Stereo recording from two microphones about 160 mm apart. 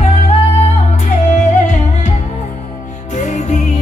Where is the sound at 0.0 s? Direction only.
45° left (ahead or behind).